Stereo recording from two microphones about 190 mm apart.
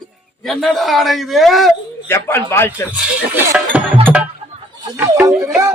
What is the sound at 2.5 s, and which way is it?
Speech, 15° left (ahead or behind).